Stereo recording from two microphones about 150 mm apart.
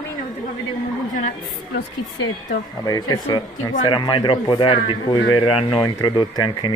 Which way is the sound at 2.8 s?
25° left (ahead or behind).